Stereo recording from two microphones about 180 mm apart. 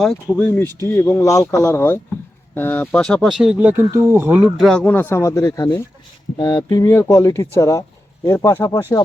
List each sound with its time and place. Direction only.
0.0 s speech: 5° left (ahead or behind)
4.7 s speech: 5° left (ahead or behind)